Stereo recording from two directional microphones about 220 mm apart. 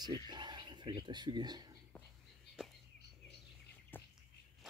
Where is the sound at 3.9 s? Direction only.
10° left (ahead or behind).